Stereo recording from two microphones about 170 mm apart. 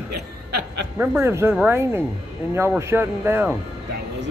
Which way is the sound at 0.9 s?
15° right (ahead or behind).